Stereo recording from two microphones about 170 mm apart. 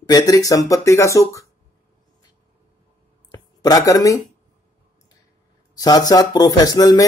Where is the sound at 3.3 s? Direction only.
20° left (ahead or behind).